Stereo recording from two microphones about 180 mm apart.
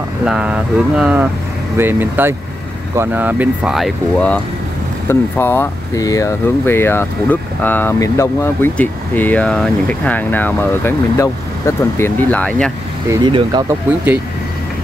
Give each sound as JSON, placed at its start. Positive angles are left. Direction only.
{"t": 0.2, "sound": "speech", "side_deg": -5}
{"t": 13.1, "sound": "speech", "side_deg": -25}